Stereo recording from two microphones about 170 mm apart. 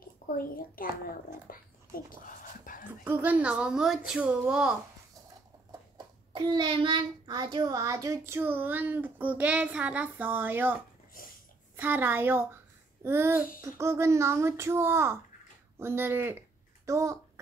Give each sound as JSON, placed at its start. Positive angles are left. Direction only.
{"t": 0.4, "sound": "a child's voice", "side_deg": 60}
{"t": 2.2, "sound": "a sound", "side_deg": 50}
{"t": 3.0, "sound": "speech", "side_deg": -10}
{"t": 6.3, "sound": "child singing", "side_deg": -30}
{"t": 11.2, "sound": "dog", "side_deg": 55}
{"t": 11.7, "sound": "child singing", "side_deg": -10}
{"t": 15.8, "sound": "speech", "side_deg": -15}